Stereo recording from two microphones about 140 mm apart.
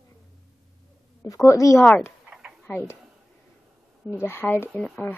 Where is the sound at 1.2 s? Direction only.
25° left (ahead or behind).